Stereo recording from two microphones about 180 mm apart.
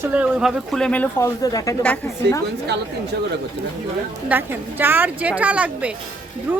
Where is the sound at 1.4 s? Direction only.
20° left (ahead or behind).